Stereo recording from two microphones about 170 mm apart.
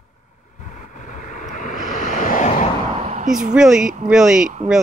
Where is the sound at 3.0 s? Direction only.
50° right (ahead or behind).